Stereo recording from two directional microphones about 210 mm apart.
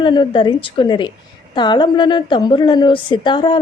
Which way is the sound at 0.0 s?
20° left (ahead or behind).